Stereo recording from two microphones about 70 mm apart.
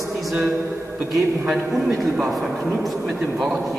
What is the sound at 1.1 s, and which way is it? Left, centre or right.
A man's voice, centre.